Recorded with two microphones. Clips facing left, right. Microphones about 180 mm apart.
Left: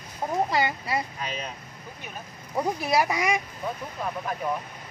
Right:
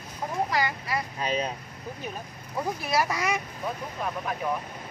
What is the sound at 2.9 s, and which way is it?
Speech, 15° left (ahead or behind).